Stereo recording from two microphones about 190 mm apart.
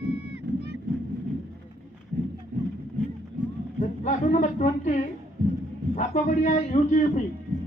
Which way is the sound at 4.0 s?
40° left (ahead or behind).